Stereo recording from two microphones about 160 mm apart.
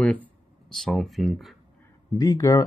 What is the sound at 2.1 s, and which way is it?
Speech, 20° left (ahead or behind).